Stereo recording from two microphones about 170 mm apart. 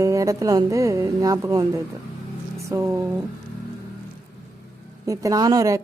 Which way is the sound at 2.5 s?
20° right (ahead or behind).